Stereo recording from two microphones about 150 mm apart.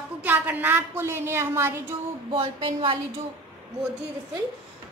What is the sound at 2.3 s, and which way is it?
Speech, 35° right (ahead or behind).